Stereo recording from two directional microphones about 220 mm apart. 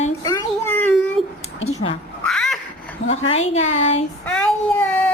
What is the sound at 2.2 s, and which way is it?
Cat, centre (ahead or behind).